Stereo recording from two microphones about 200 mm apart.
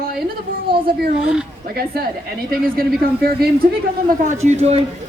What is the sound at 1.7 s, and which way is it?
Speech, 50° right (ahead or behind).